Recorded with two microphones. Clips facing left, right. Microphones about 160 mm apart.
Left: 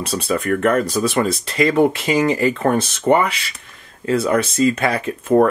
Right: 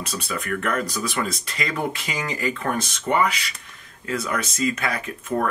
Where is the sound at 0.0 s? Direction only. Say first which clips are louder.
Left 9 dB; 30° left (ahead or behind).